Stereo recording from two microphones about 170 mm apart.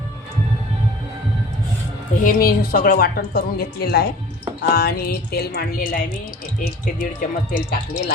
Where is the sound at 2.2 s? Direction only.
60° left (ahead or behind).